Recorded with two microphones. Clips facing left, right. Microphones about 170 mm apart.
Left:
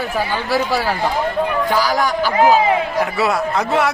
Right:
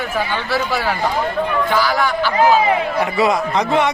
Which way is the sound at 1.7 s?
40° left (ahead or behind).